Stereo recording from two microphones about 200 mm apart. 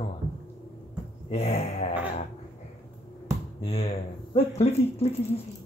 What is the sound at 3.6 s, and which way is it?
Speech, 30° left (ahead or behind).